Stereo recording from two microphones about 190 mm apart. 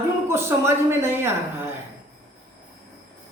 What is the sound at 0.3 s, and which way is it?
Speech, 15° right (ahead or behind).